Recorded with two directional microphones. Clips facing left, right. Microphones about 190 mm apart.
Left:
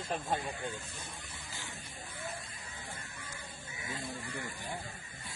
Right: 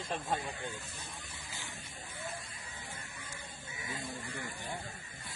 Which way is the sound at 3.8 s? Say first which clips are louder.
Left 1 dB; 20° right (ahead or behind).